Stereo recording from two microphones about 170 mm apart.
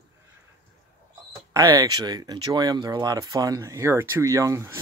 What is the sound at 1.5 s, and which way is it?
Speech, 20° right (ahead or behind).